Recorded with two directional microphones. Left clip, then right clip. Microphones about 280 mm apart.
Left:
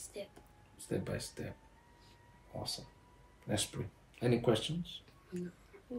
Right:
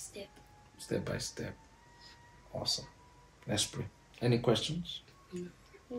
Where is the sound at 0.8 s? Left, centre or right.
Centre.